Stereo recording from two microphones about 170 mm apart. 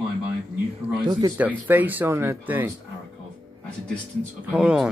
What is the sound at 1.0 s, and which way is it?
Speech, 25° right (ahead or behind).